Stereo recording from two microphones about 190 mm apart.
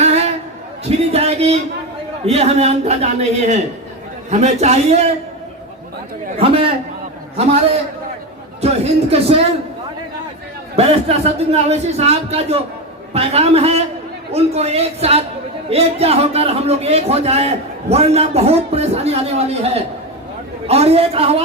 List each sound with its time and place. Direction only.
0.0 s a sound: 35° right (ahead or behind)
2.2 s a man's voice: 35° right (ahead or behind)
6.4 s a man's voice: 30° right (ahead or behind)
10.8 s a man's voice: 35° right (ahead or behind)